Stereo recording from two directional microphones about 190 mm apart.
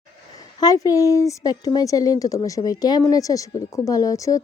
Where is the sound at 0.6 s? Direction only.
20° left (ahead or behind).